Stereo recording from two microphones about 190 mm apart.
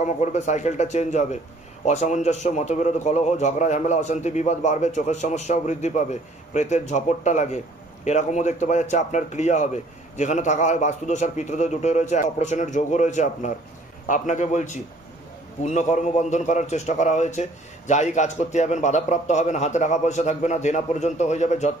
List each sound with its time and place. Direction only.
0.0 s a man's voice: 40° left (ahead or behind)